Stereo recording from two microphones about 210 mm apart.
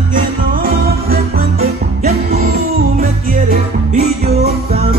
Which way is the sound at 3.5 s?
30° right (ahead or behind).